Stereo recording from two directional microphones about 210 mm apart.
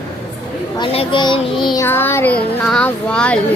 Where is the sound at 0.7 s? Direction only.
20° left (ahead or behind); by 3.4 s 5° left (ahead or behind).